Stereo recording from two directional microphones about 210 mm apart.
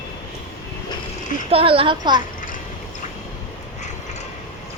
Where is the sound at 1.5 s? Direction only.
25° right (ahead or behind).